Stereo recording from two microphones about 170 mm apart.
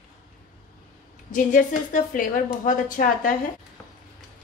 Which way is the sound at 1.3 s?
50° left (ahead or behind).